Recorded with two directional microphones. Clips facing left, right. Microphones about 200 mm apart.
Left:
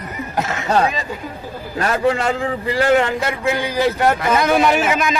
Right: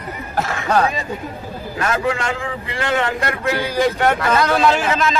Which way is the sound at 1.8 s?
35° left (ahead or behind).